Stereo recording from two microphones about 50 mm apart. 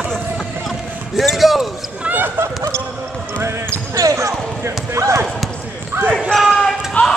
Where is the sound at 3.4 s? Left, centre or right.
Right.